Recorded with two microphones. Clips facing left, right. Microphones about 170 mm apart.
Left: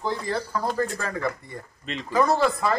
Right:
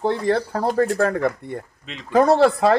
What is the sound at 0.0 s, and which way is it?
A man's voice, 65° right (ahead or behind).